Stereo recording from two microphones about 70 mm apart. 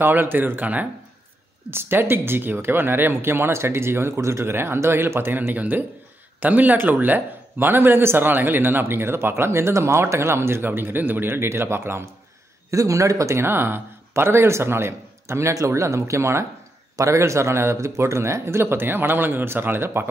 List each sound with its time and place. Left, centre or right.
0.0 s a man's voice: right
12.7 s a man's voice: right